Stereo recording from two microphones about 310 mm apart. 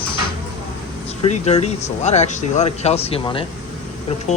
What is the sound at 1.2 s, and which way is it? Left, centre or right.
Speech, centre.